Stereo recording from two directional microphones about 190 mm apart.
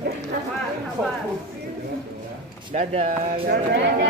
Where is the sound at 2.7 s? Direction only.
35° right (ahead or behind).